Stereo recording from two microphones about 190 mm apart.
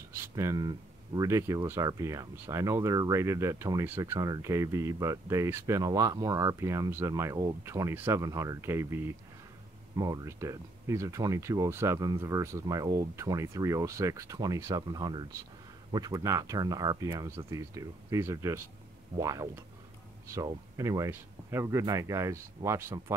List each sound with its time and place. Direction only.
0.1 s speech: 15° right (ahead or behind)